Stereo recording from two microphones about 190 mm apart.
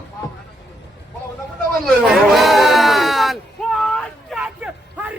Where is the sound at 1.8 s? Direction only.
Centre (ahead or behind).